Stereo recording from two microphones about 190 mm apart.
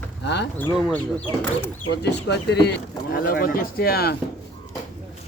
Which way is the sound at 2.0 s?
65° left (ahead or behind).